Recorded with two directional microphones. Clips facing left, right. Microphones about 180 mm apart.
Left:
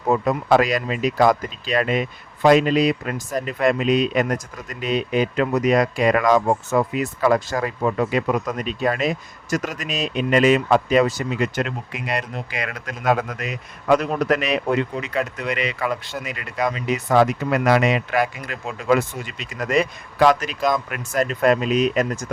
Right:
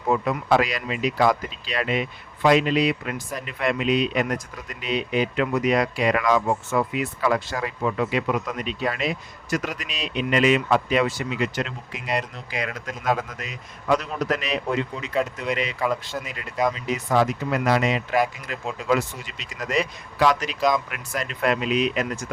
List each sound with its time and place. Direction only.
0.1 s speech: 40° left (ahead or behind); by 18.5 s 65° left (ahead or behind)
18.9 s speech: 50° left (ahead or behind)